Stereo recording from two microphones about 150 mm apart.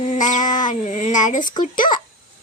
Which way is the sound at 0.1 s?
55° left (ahead or behind).